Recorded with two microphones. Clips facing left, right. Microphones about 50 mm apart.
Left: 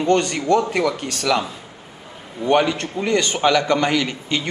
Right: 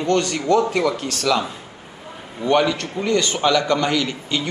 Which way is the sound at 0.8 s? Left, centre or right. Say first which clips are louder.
Even; centre.